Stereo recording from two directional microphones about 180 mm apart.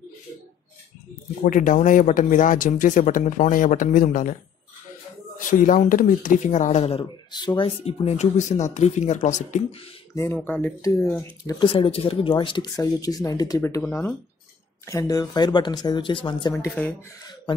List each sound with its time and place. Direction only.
1.4 s speech: 45° left (ahead or behind)
5.5 s speech: 45° left (ahead or behind)
10.3 s speech: 10° left (ahead or behind)
11.4 s speech: 30° left (ahead or behind)
16.5 s speech: 10° left (ahead or behind)